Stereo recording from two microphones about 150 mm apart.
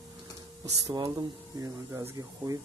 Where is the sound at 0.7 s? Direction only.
20° right (ahead or behind).